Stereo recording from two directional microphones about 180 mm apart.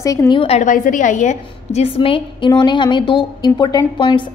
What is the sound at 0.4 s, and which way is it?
A woman's voice, 35° left (ahead or behind).